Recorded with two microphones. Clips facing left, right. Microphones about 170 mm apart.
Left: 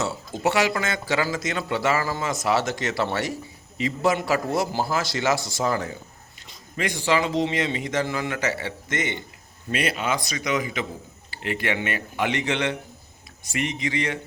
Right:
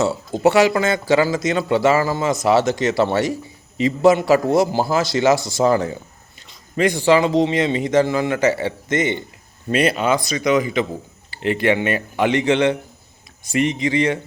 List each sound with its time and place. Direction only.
0.0 s a man's voice: 35° right (ahead or behind)